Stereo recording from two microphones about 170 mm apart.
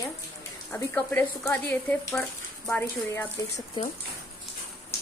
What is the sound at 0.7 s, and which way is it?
Speech, 10° left (ahead or behind).